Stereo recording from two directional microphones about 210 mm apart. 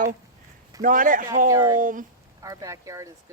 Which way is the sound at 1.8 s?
40° right (ahead or behind).